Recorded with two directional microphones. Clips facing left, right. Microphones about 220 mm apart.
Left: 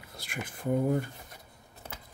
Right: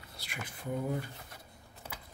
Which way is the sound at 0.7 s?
50° left (ahead or behind).